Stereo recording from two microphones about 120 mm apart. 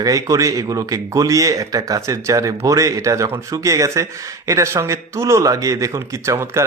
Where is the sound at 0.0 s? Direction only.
30° right (ahead or behind).